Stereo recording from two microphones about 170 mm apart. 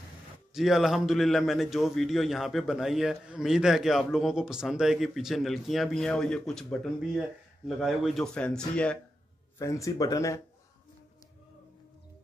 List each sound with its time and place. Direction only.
0.5 s a man's voice: centre (ahead or behind)
9.6 s speech: 20° left (ahead or behind)